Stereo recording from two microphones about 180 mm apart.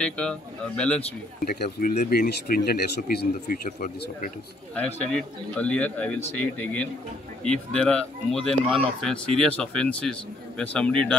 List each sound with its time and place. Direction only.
0.0 s speech: 5° left (ahead or behind)
1.4 s speech: 55° left (ahead or behind)
4.7 s a man's voice: 5° left (ahead or behind)